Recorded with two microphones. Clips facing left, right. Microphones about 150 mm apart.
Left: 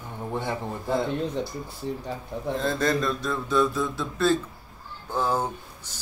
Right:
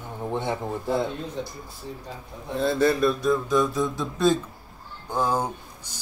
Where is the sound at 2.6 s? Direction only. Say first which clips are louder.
Right 5 dB; 10° right (ahead or behind).